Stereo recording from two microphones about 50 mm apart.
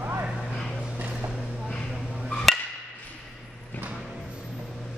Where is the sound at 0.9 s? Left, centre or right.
Right.